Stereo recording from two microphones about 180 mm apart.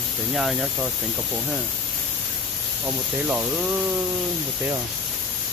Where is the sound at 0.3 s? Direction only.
Centre (ahead or behind).